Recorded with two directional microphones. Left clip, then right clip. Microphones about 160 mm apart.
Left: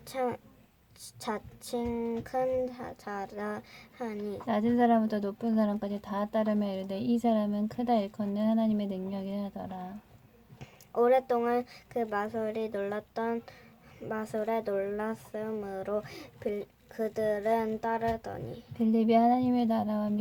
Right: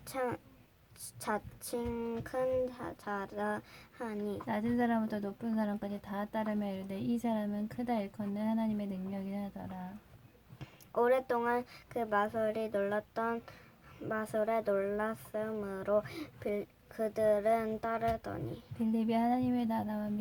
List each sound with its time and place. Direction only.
0.0 s speech: centre (ahead or behind)
4.4 s a woman's voice: 30° left (ahead or behind)
10.6 s speech: centre (ahead or behind)
18.8 s a woman's voice: 30° left (ahead or behind)